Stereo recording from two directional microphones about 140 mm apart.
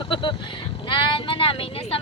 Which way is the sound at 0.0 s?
35° left (ahead or behind).